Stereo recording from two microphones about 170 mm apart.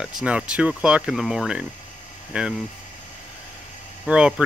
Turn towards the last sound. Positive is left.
turn(degrees=-5)  # may be behind; listen again after turning